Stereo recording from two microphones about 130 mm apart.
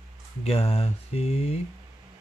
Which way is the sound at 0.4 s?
50° left (ahead or behind).